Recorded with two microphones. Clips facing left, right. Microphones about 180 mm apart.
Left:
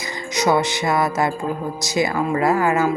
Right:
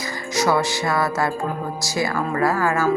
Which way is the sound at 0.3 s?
20° left (ahead or behind).